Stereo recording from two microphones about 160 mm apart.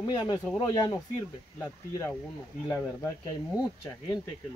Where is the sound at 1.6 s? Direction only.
20° left (ahead or behind).